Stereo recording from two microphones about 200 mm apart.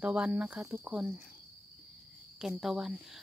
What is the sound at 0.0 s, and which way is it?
Speech, 5° right (ahead or behind).